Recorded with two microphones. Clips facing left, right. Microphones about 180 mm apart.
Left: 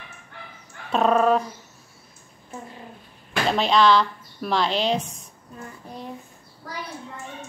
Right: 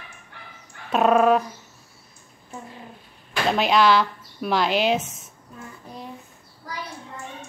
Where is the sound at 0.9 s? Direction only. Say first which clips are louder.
Right 2 dB; 5° right (ahead or behind).